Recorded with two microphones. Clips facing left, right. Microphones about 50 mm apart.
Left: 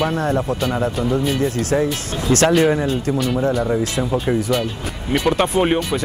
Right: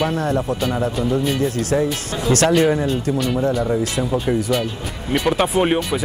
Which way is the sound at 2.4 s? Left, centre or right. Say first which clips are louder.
Left 1 dB; centre.